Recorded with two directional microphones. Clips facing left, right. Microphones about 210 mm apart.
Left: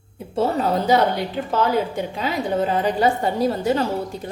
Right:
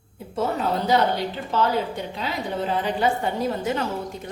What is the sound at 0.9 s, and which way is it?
A woman's voice, 50° left (ahead or behind).